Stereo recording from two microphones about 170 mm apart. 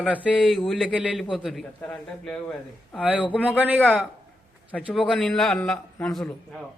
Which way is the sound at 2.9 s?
5° right (ahead or behind).